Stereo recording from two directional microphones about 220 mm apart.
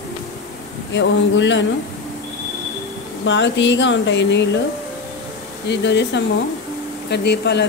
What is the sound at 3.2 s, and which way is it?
Speech, 55° left (ahead or behind).